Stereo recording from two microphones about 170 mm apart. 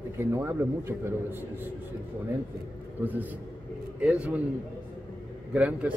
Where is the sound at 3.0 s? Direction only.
10° right (ahead or behind).